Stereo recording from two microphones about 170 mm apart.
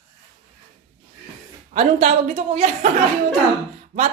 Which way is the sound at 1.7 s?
40° right (ahead or behind).